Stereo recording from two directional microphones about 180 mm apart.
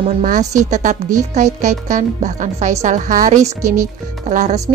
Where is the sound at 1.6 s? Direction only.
45° right (ahead or behind).